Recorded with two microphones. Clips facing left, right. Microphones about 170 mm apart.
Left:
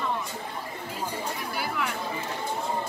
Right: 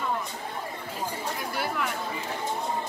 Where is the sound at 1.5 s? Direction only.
Centre (ahead or behind).